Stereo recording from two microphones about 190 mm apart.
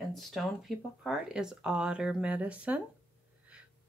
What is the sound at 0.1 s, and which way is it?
Speech, centre (ahead or behind).